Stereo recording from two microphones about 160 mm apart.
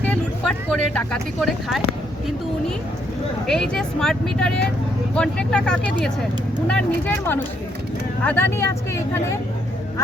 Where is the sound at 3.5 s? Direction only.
5° left (ahead or behind).